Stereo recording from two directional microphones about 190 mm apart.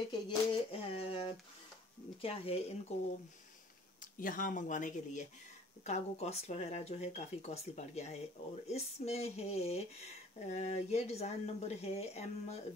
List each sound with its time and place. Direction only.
0.1 s a sound: 25° left (ahead or behind)
2.2 s speech: 30° left (ahead or behind)
4.0 s speech: 45° left (ahead or behind)